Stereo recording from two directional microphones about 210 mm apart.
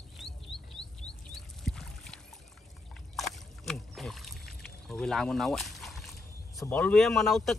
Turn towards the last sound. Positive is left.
turn(degrees=0)  # may be behind; listen again after turning